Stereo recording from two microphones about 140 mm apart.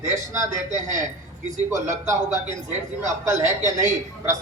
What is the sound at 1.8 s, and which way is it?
Speech, 20° right (ahead or behind).